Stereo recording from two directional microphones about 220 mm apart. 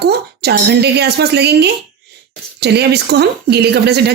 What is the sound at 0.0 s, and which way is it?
A woman's voice, 45° right (ahead or behind).